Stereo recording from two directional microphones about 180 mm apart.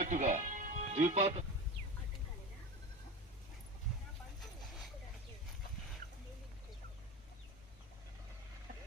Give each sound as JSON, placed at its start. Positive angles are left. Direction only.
{"t": 0.0, "sound": "music", "side_deg": -40}